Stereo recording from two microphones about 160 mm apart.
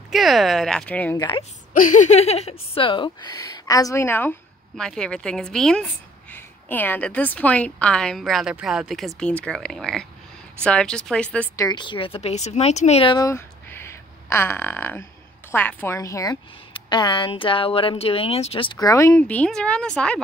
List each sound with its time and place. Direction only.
0.1 s a woman's voice: centre (ahead or behind)
1.1 s speech: 25° left (ahead or behind)
1.7 s a woman's voice: 55° left (ahead or behind); by 11.2 s 5° left (ahead or behind)
11.5 s speech: 25° left (ahead or behind); by 13.1 s 45° left (ahead or behind)
13.1 s fart: 20° left (ahead or behind)
15.5 s speech: 10° left (ahead or behind)
19.2 s a woman's voice: 5° left (ahead or behind)